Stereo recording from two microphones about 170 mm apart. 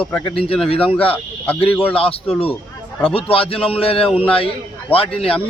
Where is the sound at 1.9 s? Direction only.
35° left (ahead or behind).